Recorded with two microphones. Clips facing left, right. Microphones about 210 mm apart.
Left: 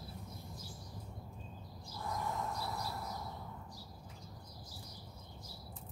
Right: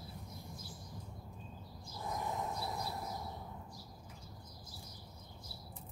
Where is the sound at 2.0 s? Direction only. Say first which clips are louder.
Even; 20° right (ahead or behind).